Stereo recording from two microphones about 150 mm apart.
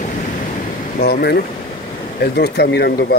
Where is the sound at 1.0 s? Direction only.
90° left.